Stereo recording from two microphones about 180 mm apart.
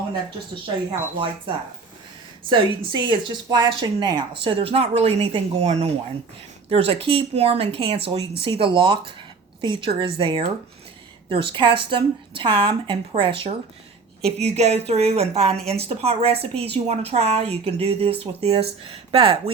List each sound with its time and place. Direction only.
0.9 s a woman's voice: 25° right (ahead or behind)